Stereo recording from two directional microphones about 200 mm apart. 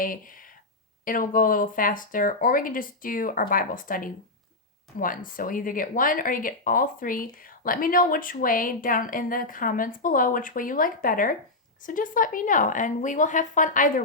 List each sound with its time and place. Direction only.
0.0 s a woman's voice: 45° left (ahead or behind)